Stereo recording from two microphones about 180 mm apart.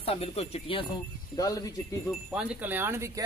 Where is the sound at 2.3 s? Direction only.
10° right (ahead or behind).